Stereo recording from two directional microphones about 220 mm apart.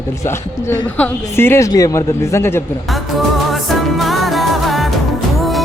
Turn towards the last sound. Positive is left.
turn(degrees=0)  # may be behind; listen again after turning